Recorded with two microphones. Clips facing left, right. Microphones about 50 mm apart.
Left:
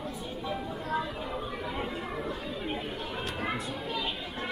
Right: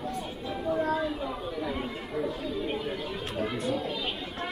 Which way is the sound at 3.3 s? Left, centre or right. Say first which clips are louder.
Right 3 dB; left.